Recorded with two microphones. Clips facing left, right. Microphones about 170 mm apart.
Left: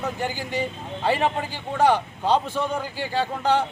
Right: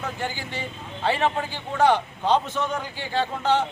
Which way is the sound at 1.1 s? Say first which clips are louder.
Left 1 dB; 10° left (ahead or behind).